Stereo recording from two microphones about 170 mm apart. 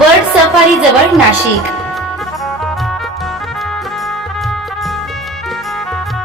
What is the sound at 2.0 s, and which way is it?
Music, centre (ahead or behind).